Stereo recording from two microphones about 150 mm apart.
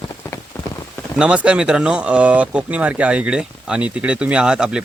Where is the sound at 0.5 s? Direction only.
15° left (ahead or behind).